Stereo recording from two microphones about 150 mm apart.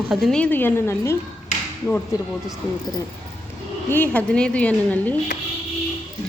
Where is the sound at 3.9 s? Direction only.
10° left (ahead or behind).